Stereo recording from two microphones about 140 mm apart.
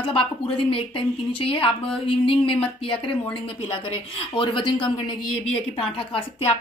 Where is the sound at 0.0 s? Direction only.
40° left (ahead or behind).